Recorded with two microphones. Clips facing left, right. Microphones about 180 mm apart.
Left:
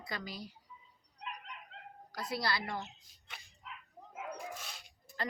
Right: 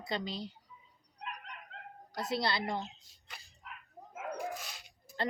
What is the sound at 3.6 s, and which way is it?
Dog, 50° right (ahead or behind).